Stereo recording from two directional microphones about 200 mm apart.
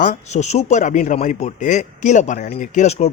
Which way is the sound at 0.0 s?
35° left (ahead or behind).